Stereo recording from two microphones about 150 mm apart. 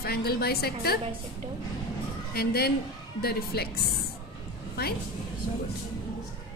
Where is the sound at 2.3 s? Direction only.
90° left.